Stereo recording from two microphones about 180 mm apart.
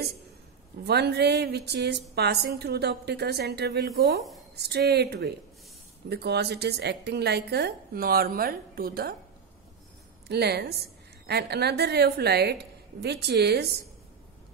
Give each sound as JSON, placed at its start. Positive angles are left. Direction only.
{"t": 0.8, "sound": "a woman's voice", "side_deg": -65}
{"t": 10.2, "sound": "a woman's voice", "side_deg": -65}